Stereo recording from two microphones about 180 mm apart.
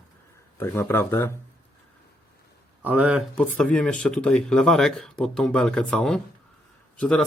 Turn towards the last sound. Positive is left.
turn(degrees=5)  # may be behind; listen again after turning